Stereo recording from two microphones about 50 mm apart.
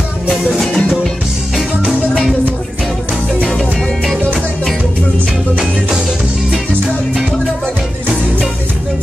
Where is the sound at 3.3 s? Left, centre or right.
Centre.